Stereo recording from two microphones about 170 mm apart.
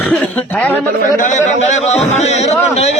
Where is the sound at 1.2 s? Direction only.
45° left (ahead or behind).